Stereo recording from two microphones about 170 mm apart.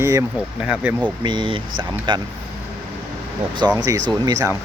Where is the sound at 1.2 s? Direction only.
25° right (ahead or behind).